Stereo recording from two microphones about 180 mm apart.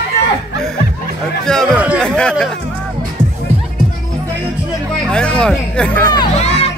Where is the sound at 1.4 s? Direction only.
5° left (ahead or behind).